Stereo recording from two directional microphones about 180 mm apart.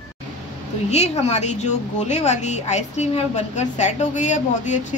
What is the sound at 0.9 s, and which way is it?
A woman's voice, 35° left (ahead or behind).